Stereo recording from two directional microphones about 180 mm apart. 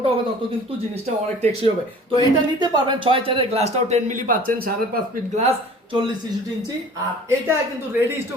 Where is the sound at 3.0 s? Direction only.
30° right (ahead or behind); by 5.0 s 50° right (ahead or behind).